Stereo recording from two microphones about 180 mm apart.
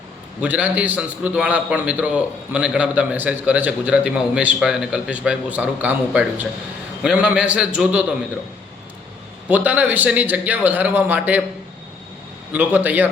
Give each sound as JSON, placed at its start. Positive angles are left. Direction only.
{"t": 0.4, "sound": "a man's voice", "side_deg": -10}
{"t": 9.5, "sound": "a man's voice", "side_deg": -10}
{"t": 12.5, "sound": "a man's voice", "side_deg": -10}